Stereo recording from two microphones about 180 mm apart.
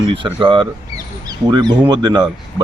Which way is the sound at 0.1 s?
30° right (ahead or behind).